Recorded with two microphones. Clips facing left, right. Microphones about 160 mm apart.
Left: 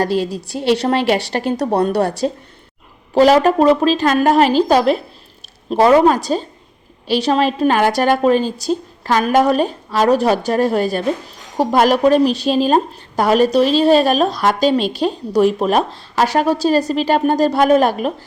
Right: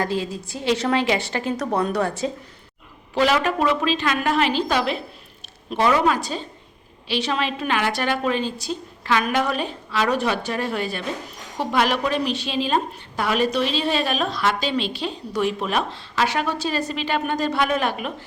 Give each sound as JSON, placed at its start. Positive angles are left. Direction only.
{"t": 0.0, "sound": "a woman's voice", "side_deg": 70}
{"t": 1.5, "sound": "a woman's voice", "side_deg": 35}
{"t": 2.0, "sound": "a woman's voice", "side_deg": 70}
{"t": 3.2, "sound": "a woman's voice", "side_deg": 40}